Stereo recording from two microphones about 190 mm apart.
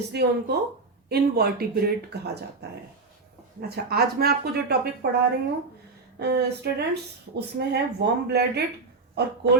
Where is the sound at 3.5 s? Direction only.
55° right (ahead or behind).